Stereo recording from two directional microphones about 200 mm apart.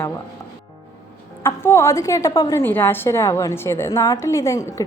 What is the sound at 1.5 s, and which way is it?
A woman's voice, 15° left (ahead or behind).